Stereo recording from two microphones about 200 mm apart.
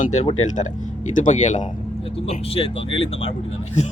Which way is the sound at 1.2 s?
40° left (ahead or behind).